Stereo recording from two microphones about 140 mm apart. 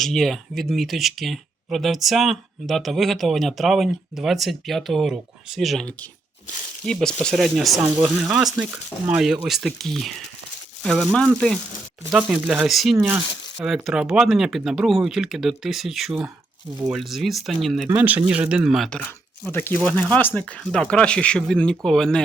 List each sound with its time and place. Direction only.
0.0 s speech: centre (ahead or behind)
12.1 s speech: 5° right (ahead or behind)
17.9 s speech: 10° right (ahead or behind)